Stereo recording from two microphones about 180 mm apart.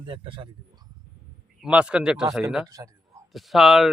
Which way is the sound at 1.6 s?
5° right (ahead or behind).